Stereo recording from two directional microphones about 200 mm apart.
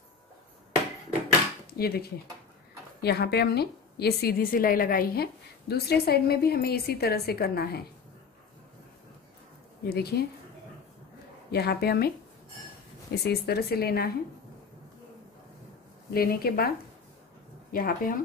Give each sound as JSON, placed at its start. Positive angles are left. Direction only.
{"t": 1.7, "sound": "a woman's voice", "side_deg": 50}
{"t": 9.8, "sound": "a woman's voice", "side_deg": 50}
{"t": 11.5, "sound": "a woman's voice", "side_deg": 55}
{"t": 13.1, "sound": "a woman's voice", "side_deg": 50}
{"t": 16.1, "sound": "a woman's voice", "side_deg": 50}
{"t": 17.7, "sound": "a woman's voice", "side_deg": 45}